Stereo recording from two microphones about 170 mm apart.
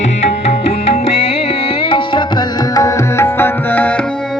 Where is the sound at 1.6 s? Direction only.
30° left (ahead or behind); by 4.0 s 10° left (ahead or behind).